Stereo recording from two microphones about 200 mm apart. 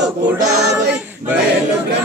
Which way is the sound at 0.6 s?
55° right (ahead or behind).